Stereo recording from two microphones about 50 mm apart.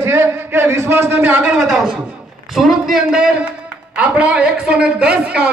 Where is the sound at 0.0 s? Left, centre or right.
Right.